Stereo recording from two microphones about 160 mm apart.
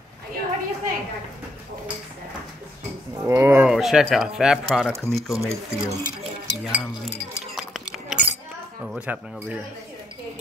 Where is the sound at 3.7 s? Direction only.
Centre (ahead or behind).